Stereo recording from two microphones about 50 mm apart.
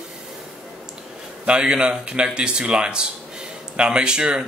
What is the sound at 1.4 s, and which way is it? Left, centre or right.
Speech, centre.